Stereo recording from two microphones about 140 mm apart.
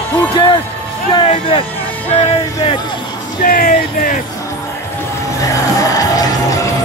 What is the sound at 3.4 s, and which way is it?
Music, 80° left.